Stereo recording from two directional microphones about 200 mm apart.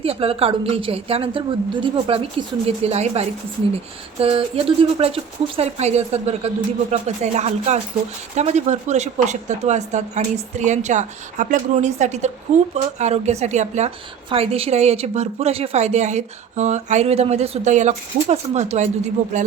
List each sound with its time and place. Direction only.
0.0 s a woman's voice: 30° right (ahead or behind)